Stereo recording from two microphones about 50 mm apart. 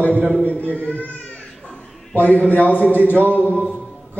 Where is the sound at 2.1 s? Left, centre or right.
Left.